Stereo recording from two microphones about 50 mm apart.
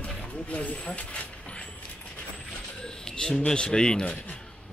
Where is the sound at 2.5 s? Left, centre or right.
Centre.